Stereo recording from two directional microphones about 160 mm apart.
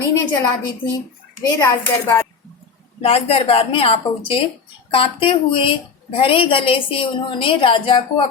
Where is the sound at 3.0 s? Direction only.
35° left (ahead or behind).